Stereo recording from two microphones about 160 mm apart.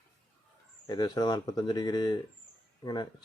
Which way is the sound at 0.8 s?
25° left (ahead or behind).